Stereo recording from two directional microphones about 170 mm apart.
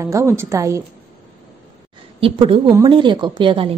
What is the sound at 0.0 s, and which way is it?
Speech, 15° right (ahead or behind).